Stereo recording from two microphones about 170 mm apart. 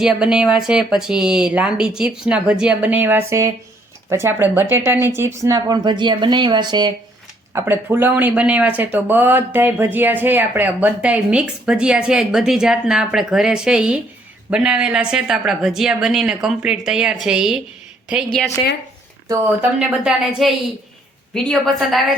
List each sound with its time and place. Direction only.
0.0 s speech: 5° right (ahead or behind); by 6.9 s 25° right (ahead or behind)
7.5 s speech: 15° right (ahead or behind)
18.6 s speech: 30° left (ahead or behind)
19.3 s speech: 10° right (ahead or behind)